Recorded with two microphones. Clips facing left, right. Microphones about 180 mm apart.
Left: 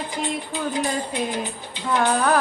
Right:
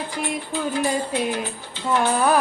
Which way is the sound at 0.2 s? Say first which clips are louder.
Right 1 dB; 20° left (ahead or behind).